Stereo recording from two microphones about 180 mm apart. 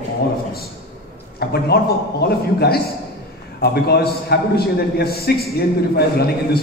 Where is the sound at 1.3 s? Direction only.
60° left (ahead or behind).